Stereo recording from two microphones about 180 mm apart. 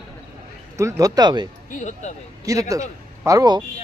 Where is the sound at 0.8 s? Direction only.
20° right (ahead or behind).